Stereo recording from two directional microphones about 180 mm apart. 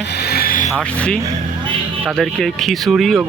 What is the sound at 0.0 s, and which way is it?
Vehicle, 65° left (ahead or behind).